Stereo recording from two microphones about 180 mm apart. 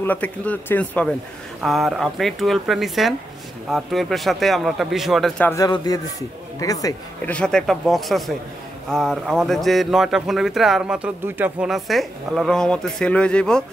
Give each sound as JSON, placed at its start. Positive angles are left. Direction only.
{"t": 0.0, "sound": "a man's voice", "side_deg": 10}
{"t": 5.5, "sound": "speech", "side_deg": 20}
{"t": 7.2, "sound": "a man's voice", "side_deg": 5}